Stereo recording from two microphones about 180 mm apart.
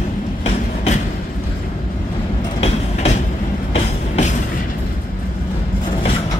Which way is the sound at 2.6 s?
35° left (ahead or behind).